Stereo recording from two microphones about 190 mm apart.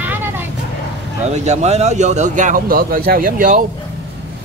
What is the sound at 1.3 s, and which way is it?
Speech, 35° right (ahead or behind).